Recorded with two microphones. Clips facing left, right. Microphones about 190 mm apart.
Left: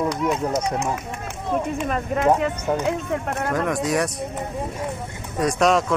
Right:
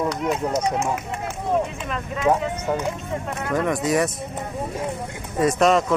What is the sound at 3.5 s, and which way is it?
Speech, centre (ahead or behind).